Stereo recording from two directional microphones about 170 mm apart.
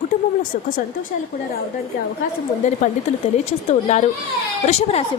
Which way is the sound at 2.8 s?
50° left (ahead or behind).